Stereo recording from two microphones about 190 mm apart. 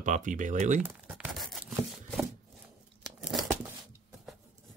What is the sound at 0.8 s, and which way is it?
Tearing, 5° right (ahead or behind).